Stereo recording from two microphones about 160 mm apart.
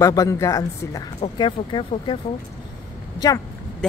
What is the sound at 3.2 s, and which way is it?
Speech, 25° left (ahead or behind).